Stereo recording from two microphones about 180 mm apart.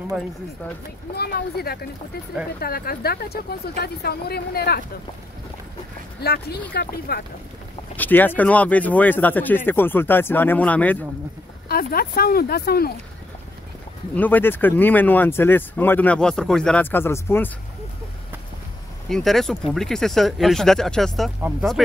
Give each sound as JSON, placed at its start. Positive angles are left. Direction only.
{"t": 1.1, "sound": "speech", "side_deg": 60}
{"t": 6.2, "sound": "speech", "side_deg": 60}
{"t": 7.9, "sound": "speech", "side_deg": 10}
{"t": 11.7, "sound": "speech", "side_deg": 55}
{"t": 14.1, "sound": "speech", "side_deg": 10}
{"t": 19.0, "sound": "speech", "side_deg": 0}
{"t": 21.4, "sound": "speech", "side_deg": -10}